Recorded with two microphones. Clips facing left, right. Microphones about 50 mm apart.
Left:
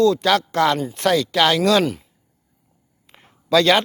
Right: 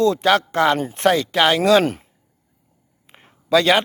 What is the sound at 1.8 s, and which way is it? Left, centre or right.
Speech, right.